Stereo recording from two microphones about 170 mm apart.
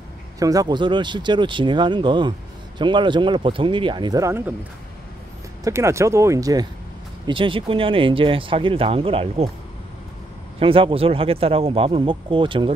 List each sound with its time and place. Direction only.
0.4 s speech: 20° right (ahead or behind)
5.6 s speech: 15° right (ahead or behind); by 9.5 s 35° right (ahead or behind)
10.6 s speech: 30° right (ahead or behind)